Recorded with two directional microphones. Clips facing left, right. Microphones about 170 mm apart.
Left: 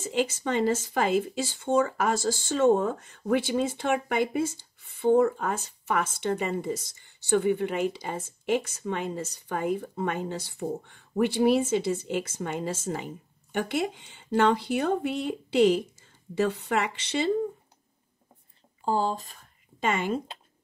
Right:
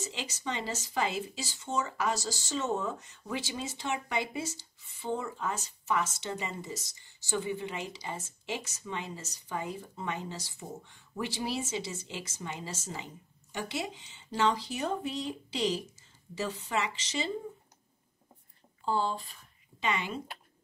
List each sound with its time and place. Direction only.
0.0 s speech: 50° left (ahead or behind)
18.9 s speech: 40° left (ahead or behind)